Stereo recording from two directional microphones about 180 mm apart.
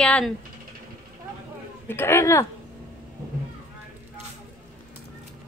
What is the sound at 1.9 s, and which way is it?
Speech, 15° left (ahead or behind).